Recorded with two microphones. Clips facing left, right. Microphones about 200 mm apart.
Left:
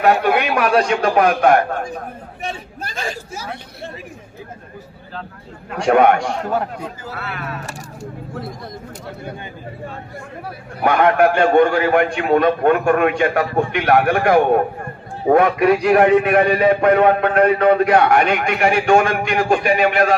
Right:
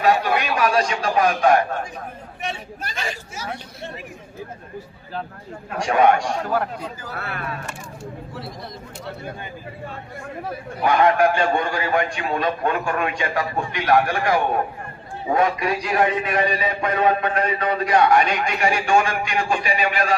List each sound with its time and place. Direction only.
0.0 s a man's voice: 60° left (ahead or behind)
5.8 s a man's voice: 60° left (ahead or behind)
6.5 s speech: 25° left (ahead or behind)
7.2 s speech: 50° right (ahead or behind)
8.3 s speech: 50° left (ahead or behind)
10.8 s a man's voice: 60° left (ahead or behind)